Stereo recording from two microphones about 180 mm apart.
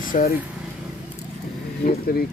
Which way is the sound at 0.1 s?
45° left (ahead or behind).